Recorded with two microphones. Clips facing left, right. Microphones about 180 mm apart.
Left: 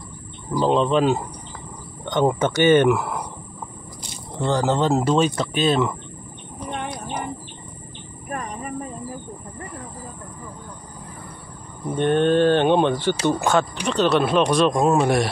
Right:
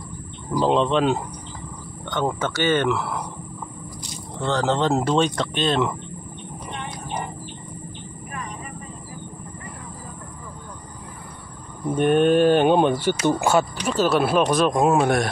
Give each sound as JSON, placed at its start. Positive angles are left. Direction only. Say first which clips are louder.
{"t": 0.6, "sound": "speech", "louder": "left 1 dB", "side_deg": 0}
{"t": 2.0, "sound": "speech", "louder": "left 5 dB", "side_deg": 20}
{"t": 4.4, "sound": "speech", "louder": "left 1 dB", "side_deg": 10}
{"t": 12.0, "sound": "speech", "louder": "right 1 dB", "side_deg": -10}